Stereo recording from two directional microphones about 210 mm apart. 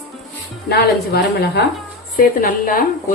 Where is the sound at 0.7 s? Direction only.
50° left (ahead or behind).